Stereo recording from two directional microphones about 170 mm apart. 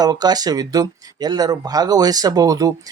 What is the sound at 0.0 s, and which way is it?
Speech, 25° right (ahead or behind).